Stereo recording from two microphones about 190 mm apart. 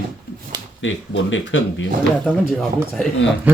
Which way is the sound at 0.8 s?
75° left (ahead or behind).